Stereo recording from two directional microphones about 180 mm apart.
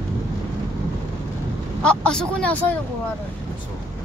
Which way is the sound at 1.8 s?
5° left (ahead or behind).